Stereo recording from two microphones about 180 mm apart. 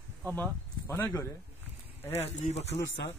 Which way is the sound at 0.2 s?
10° left (ahead or behind).